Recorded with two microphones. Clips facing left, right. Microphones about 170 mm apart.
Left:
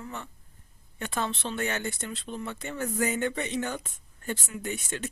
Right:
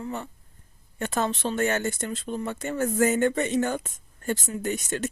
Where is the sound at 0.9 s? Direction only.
45° right (ahead or behind).